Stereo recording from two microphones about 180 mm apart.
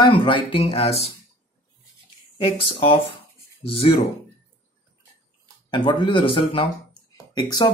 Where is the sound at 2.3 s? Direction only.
30° left (ahead or behind).